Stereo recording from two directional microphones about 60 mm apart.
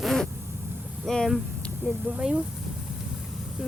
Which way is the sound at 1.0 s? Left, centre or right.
Centre.